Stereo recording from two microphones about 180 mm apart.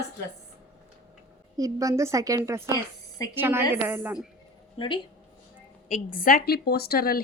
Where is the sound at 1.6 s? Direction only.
20° right (ahead or behind).